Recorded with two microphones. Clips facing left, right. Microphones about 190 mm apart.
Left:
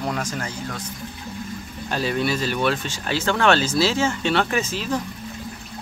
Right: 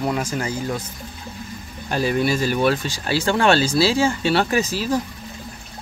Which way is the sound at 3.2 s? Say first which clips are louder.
Right 2 dB; 35° right (ahead or behind).